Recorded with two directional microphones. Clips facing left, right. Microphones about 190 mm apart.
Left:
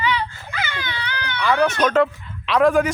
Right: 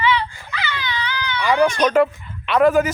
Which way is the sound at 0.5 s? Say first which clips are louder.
Right 4 dB; 45° left (ahead or behind).